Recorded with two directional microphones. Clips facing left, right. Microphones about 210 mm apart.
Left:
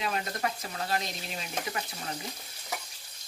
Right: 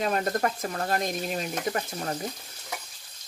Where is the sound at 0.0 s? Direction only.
45° right (ahead or behind).